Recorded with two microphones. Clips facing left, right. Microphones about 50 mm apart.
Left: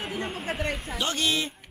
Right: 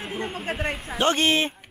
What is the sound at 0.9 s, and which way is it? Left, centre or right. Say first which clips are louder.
Speech: right 8 dB; right.